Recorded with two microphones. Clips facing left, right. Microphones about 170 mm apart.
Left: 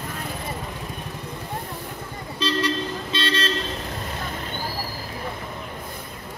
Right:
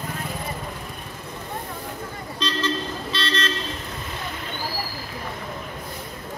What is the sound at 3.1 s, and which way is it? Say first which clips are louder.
Car: left 1 dB; 25° left (ahead or behind).